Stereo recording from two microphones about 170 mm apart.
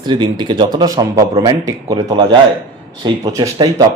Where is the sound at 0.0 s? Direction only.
25° right (ahead or behind).